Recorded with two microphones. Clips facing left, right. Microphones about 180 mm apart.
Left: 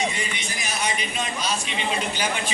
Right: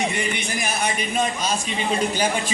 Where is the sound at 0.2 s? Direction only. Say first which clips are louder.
Right 6 dB; 55° right (ahead or behind).